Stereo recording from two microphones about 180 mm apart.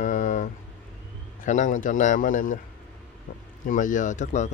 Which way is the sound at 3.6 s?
45° left (ahead or behind).